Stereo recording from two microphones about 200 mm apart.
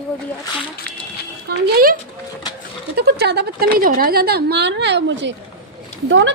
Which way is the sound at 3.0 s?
55° right (ahead or behind).